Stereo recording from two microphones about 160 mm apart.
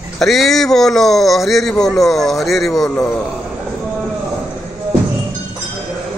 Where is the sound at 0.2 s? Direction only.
Centre (ahead or behind).